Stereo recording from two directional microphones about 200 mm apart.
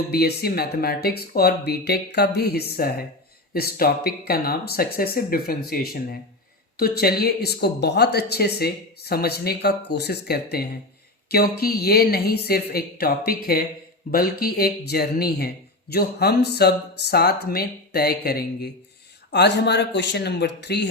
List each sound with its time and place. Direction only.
0.1 s a man's voice: 50° left (ahead or behind)